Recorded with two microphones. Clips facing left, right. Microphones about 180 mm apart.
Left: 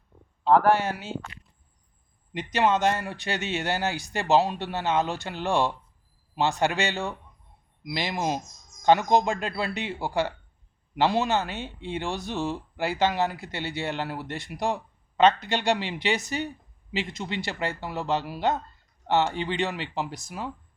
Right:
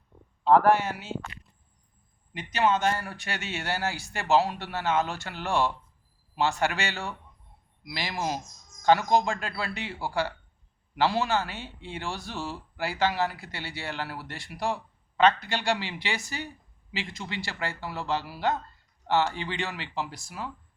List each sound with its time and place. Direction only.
0.4 s speech: centre (ahead or behind)
2.8 s speech: 25° left (ahead or behind)